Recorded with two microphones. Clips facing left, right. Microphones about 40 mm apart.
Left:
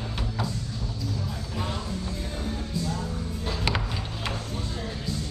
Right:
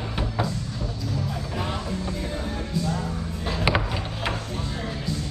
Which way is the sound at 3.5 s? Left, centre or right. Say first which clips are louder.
Right 5 dB; right.